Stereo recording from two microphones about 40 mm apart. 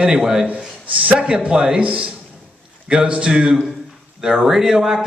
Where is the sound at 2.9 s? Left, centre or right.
Right.